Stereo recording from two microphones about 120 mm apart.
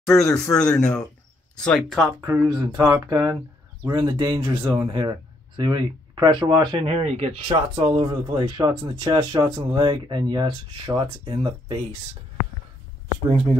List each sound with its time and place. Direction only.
0.0 s speech: 5° left (ahead or behind)
2.2 s speech: 25° right (ahead or behind)
6.8 s speech: 55° right (ahead or behind)